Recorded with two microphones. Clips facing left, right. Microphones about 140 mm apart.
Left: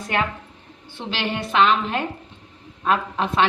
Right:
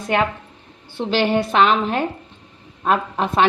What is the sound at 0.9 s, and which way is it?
A woman's voice, 40° right (ahead or behind).